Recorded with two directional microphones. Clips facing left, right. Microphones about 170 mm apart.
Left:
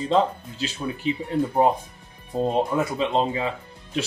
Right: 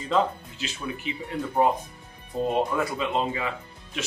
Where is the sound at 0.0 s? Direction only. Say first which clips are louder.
Left 3 dB; 30° left (ahead or behind).